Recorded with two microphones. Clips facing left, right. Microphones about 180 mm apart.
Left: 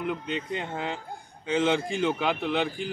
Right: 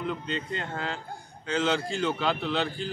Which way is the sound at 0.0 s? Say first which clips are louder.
Left 1 dB; 15° left (ahead or behind).